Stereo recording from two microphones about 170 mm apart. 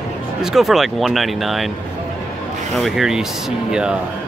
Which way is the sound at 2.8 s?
Centre (ahead or behind).